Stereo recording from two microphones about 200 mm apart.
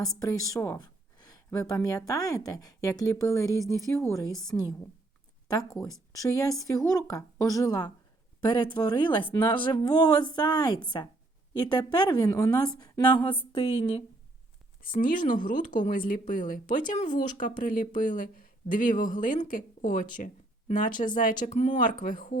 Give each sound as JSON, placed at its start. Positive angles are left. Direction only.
{"t": 0.0, "sound": "speech", "side_deg": 20}
{"t": 5.8, "sound": "a woman's voice", "side_deg": 15}
{"t": 14.8, "sound": "speech", "side_deg": 45}